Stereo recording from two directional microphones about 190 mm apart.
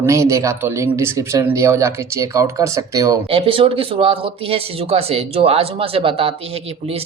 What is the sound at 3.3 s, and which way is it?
A woman's voice, 30° right (ahead or behind).